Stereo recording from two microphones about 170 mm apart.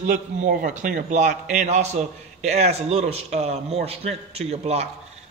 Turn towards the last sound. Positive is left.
turn(degrees=-35)  # may be behind; listen again after turning